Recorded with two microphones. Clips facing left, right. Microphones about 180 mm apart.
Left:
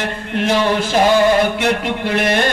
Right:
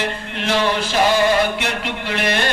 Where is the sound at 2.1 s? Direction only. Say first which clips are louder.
Left 4 dB; 50° left (ahead or behind).